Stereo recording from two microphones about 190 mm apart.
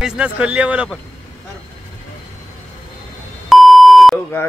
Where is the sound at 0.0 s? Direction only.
5° right (ahead or behind).